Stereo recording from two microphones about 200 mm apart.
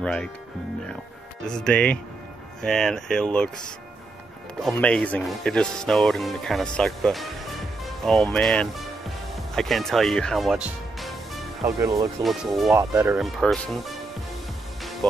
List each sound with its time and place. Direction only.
0.0 s speech: 5° left (ahead or behind)
1.5 s speech: 5° left (ahead or behind)
4.6 s speech: 5° left (ahead or behind)
11.6 s speech: 15° right (ahead or behind)
12.2 s speech: centre (ahead or behind)
12.7 s speech: 15° right (ahead or behind)
13.2 s speech: centre (ahead or behind)